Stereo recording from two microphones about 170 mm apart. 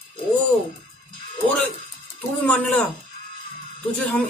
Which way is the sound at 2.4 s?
10° left (ahead or behind).